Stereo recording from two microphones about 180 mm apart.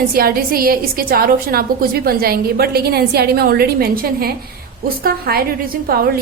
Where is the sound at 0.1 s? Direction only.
55° right (ahead or behind).